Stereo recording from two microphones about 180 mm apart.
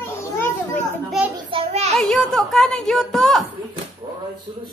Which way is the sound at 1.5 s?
35° right (ahead or behind).